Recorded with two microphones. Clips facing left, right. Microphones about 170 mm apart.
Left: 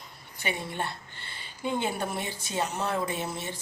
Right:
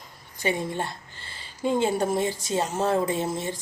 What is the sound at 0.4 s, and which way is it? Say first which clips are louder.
A woman's voice: right 6 dB; 35° right (ahead or behind).